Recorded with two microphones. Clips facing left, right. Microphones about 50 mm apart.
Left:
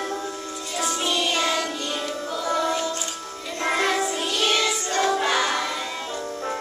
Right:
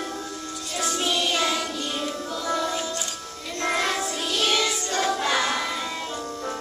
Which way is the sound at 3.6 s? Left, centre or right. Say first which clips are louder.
Left 2 dB; centre.